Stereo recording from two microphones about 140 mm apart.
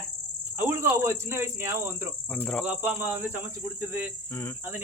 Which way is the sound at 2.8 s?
15° right (ahead or behind).